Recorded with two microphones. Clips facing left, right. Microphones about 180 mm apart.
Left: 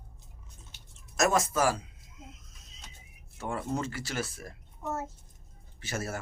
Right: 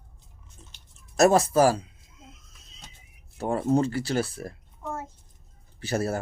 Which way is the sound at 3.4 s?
35° right (ahead or behind).